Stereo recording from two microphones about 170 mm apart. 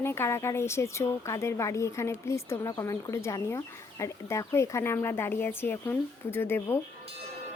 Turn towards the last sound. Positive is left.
turn(degrees=15)  # may be behind; listen again after turning